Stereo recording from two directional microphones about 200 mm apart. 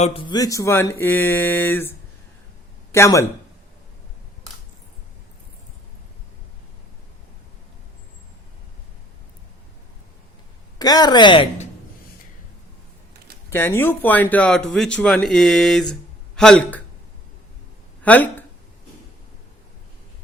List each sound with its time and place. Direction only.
0.0 s speech: 30° left (ahead or behind)
10.8 s a woman's voice: 20° left (ahead or behind)
13.5 s speech: 10° left (ahead or behind)
18.0 s a sound: 10° left (ahead or behind)